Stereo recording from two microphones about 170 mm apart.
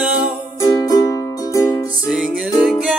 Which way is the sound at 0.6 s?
20° left (ahead or behind).